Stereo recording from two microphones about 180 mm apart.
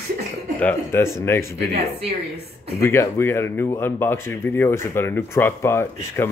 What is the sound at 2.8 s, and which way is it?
Speech, 15° left (ahead or behind).